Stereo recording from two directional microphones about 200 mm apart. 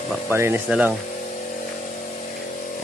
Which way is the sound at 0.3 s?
10° right (ahead or behind).